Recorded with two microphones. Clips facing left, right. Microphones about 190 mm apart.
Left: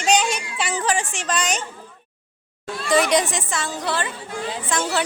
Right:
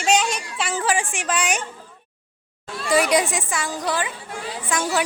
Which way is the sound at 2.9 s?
10° right (ahead or behind).